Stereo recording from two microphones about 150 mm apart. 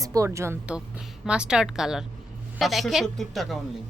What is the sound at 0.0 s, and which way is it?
A woman's voice, 20° right (ahead or behind).